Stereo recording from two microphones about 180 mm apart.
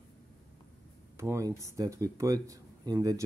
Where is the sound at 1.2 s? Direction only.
15° right (ahead or behind).